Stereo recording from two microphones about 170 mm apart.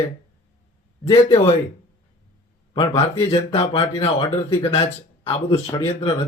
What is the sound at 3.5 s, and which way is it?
Speech, 35° left (ahead or behind).